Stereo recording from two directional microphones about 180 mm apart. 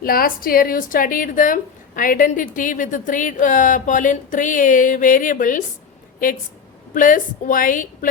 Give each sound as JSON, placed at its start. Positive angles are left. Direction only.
{"t": 0.0, "sound": "a woman's voice", "side_deg": 55}
{"t": 6.9, "sound": "a woman's voice", "side_deg": 50}